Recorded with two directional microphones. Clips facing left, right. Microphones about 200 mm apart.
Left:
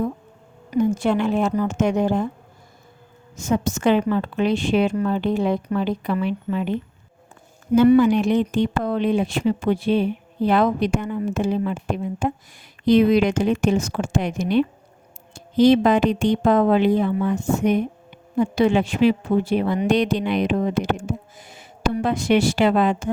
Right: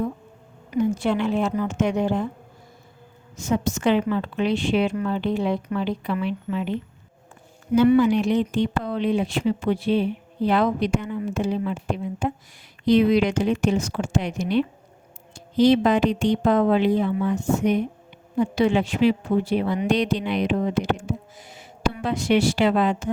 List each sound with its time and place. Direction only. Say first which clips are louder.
0.7 s a woman's voice: left 2 dB; 45° left (ahead or behind)
3.3 s a woman's voice: left 2 dB; 45° left (ahead or behind)
7.8 s a woman's voice: left 2 dB; 50° left (ahead or behind)